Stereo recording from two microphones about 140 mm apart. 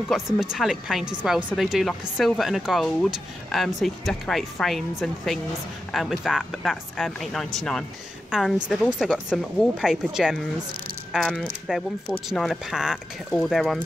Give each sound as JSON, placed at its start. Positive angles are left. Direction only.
{"t": 0.1, "sound": "a woman's voice", "side_deg": 0}